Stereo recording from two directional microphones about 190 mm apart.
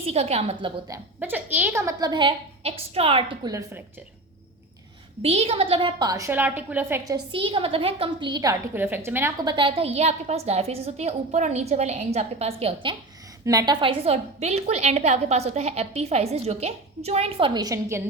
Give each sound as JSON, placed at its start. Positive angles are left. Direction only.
{"t": 0.1, "sound": "a woman's voice", "side_deg": -35}
{"t": 0.9, "sound": "a woman's voice", "side_deg": -10}
{"t": 3.5, "sound": "a woman's voice", "side_deg": -15}
{"t": 5.2, "sound": "a woman's voice", "side_deg": -30}
{"t": 13.4, "sound": "a woman's voice", "side_deg": -20}